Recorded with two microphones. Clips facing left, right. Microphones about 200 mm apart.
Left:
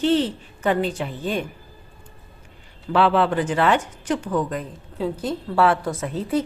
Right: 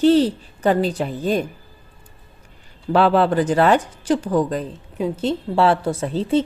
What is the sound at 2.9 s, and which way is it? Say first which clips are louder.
A woman's voice: right 3 dB; 40° right (ahead or behind).